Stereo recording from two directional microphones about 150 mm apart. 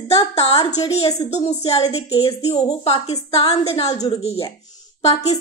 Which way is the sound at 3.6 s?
45° left (ahead or behind).